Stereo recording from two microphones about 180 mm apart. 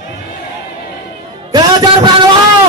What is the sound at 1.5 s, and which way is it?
Music, 25° right (ahead or behind).